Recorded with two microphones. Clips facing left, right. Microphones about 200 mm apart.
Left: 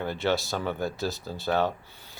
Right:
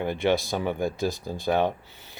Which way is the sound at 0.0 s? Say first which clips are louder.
Right 3 dB; 15° right (ahead or behind).